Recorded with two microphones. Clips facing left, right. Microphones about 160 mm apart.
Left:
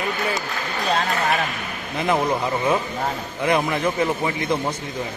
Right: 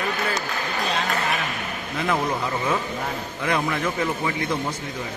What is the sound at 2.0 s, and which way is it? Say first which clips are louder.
A man's voice: left 3 dB; 20° left (ahead or behind).